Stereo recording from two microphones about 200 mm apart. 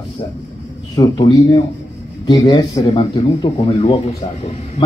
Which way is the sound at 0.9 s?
20° left (ahead or behind).